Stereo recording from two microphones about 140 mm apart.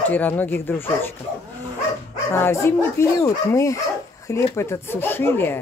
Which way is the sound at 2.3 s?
15° left (ahead or behind).